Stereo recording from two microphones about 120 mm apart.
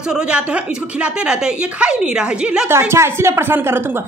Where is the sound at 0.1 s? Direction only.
10° right (ahead or behind).